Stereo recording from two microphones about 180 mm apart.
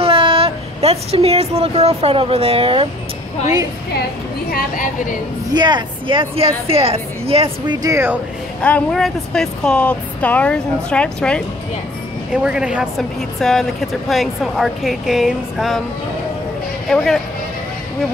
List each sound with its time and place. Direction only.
0.0 s speech: 30° right (ahead or behind)
4.5 s a woman's voice: 50° left (ahead or behind)
5.5 s speech: 25° right (ahead or behind)
7.8 s speech: 15° right (ahead or behind)
8.6 s a woman's voice: 5° left (ahead or behind)
16.9 s a woman's voice: centre (ahead or behind)